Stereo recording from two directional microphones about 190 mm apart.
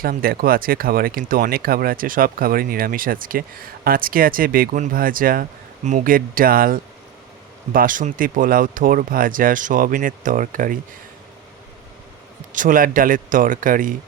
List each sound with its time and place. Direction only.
0.0 s speech: 50° right (ahead or behind)
12.5 s speech: 45° right (ahead or behind)